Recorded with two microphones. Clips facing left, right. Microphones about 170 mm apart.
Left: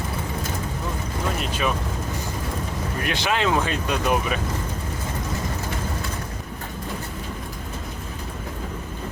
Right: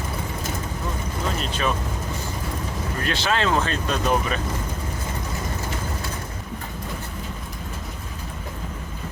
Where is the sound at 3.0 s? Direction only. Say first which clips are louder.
Even; 15° left (ahead or behind).